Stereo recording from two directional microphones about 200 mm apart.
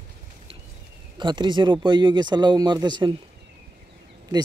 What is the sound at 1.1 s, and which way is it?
Speech, 20° right (ahead or behind).